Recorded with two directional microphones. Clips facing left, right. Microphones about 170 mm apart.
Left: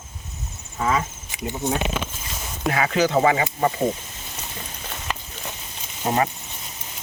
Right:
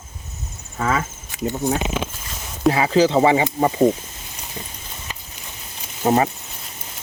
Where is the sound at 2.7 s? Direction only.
30° right (ahead or behind).